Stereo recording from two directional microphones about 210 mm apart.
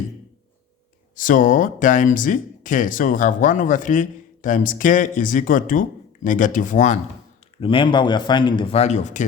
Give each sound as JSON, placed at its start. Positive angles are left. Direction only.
{"t": 1.1, "sound": "speech", "side_deg": 40}
{"t": 7.6, "sound": "speech", "side_deg": 25}